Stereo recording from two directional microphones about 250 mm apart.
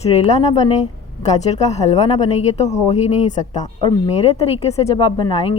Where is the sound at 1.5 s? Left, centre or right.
Left.